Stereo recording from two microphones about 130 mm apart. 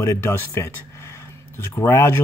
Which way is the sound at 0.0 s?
20° left (ahead or behind).